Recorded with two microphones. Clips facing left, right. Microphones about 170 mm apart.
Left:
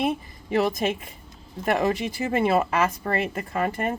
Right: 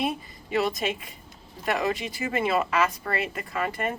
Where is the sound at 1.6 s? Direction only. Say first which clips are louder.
Left 4 dB; 45° left (ahead or behind).